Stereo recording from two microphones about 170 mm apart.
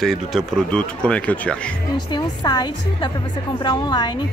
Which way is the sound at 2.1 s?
25° left (ahead or behind).